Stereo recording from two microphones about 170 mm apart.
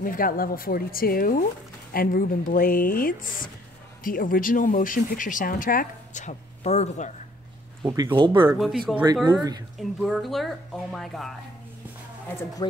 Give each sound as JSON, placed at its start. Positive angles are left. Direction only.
{"t": 0.0, "sound": "speech", "side_deg": 55}
{"t": 7.8, "sound": "speech", "side_deg": -20}
{"t": 8.5, "sound": "speech", "side_deg": 0}
{"t": 12.3, "sound": "speech", "side_deg": 15}